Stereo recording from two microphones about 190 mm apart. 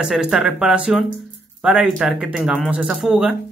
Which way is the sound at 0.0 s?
5° right (ahead or behind).